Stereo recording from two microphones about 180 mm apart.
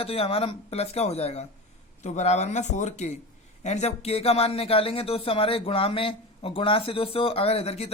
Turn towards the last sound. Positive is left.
turn(degrees=35)  # may be behind; listen again after turning